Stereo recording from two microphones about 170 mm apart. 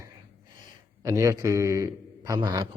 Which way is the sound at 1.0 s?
20° right (ahead or behind).